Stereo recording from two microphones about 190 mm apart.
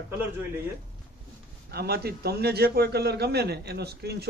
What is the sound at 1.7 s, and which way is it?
A man's voice, 55° right (ahead or behind).